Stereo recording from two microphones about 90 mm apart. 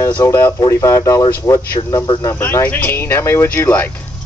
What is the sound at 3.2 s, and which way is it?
Speech, 30° left (ahead or behind).